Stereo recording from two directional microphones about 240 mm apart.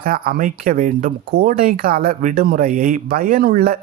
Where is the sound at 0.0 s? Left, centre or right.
Right.